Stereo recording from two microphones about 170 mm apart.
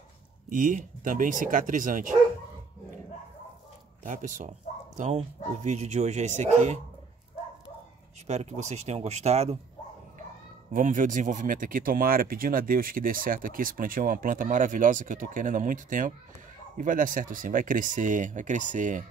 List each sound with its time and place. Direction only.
0.5 s speech: 50° right (ahead or behind)
4.0 s speech: 45° right (ahead or behind)
8.3 s speech: 40° right (ahead or behind)
10.7 s speech: 50° right (ahead or behind)